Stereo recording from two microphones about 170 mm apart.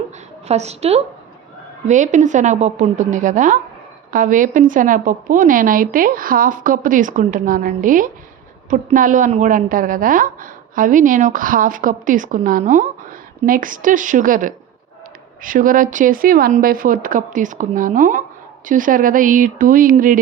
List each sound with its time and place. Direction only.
0.4 s a woman's voice: 40° right (ahead or behind)